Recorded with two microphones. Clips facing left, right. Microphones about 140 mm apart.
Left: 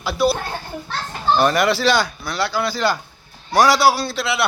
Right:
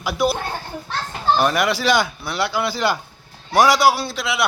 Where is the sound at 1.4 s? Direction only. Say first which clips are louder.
Left 5 dB; 10° right (ahead or behind).